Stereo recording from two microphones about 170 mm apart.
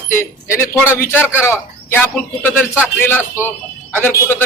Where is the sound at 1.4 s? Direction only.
15° left (ahead or behind).